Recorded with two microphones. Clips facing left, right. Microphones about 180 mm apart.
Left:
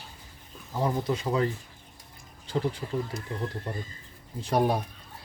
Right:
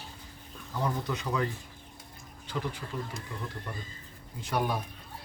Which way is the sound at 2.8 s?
25° left (ahead or behind).